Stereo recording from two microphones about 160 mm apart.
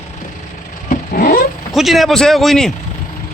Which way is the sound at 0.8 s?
60° left (ahead or behind).